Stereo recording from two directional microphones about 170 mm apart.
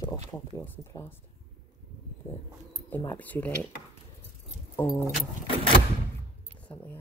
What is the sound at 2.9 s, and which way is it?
Speech, 10° left (ahead or behind).